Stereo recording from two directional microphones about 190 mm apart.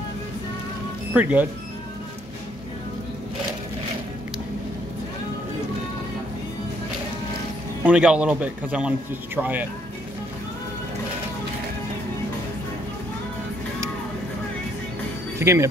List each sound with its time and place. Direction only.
1.1 s a man's voice: 10° right (ahead or behind)
7.8 s a man's voice: 5° right (ahead or behind)
15.3 s speech: 15° right (ahead or behind)